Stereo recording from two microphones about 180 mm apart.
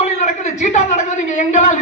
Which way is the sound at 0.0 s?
40° left (ahead or behind).